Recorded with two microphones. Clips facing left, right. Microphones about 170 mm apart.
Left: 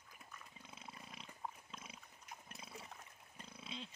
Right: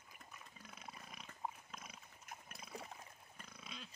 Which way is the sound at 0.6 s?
25° left (ahead or behind).